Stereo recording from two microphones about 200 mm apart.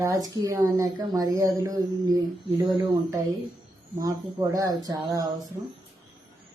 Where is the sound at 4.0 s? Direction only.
15° right (ahead or behind).